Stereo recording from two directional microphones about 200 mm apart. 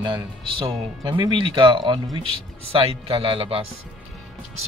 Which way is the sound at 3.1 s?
25° right (ahead or behind).